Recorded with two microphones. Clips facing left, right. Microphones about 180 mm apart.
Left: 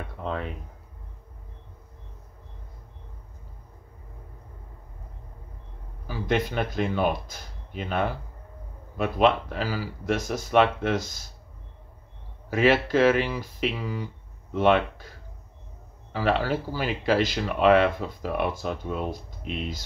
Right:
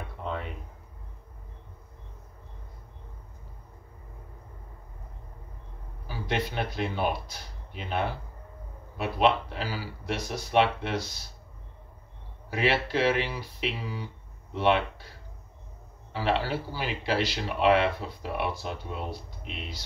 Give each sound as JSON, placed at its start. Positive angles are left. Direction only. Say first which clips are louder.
{"t": 6.0, "sound": "speech", "louder": "left 5 dB", "side_deg": 50}
{"t": 12.4, "sound": "speech", "louder": "left 6 dB", "side_deg": 45}
{"t": 16.1, "sound": "speech", "louder": "left 3 dB", "side_deg": 45}